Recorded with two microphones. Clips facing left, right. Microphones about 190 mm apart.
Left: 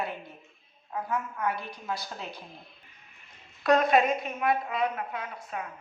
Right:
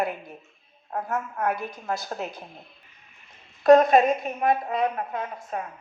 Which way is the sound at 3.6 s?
45° right (ahead or behind).